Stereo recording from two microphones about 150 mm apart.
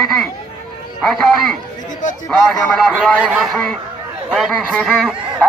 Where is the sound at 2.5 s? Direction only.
5° left (ahead or behind).